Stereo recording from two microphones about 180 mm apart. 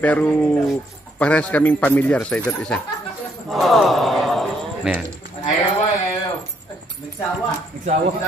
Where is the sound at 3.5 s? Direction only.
Centre (ahead or behind).